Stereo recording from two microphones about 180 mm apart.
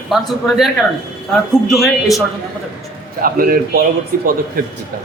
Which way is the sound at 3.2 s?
55° right (ahead or behind).